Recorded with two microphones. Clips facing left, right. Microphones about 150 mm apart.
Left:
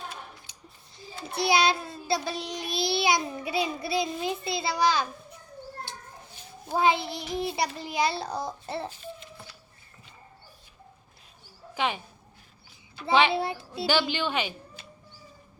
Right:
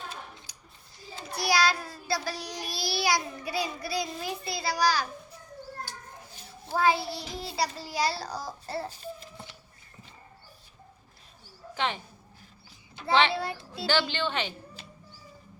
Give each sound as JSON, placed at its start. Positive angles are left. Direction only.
{"t": 0.5, "sound": "a sound", "side_deg": 25}
{"t": 1.3, "sound": "a child's voice", "side_deg": 25}
{"t": 5.9, "sound": "a sound", "side_deg": 25}
{"t": 6.7, "sound": "a child's voice", "side_deg": 20}
{"t": 11.7, "sound": "speech", "side_deg": 10}
{"t": 13.3, "sound": "a child's voice", "side_deg": 20}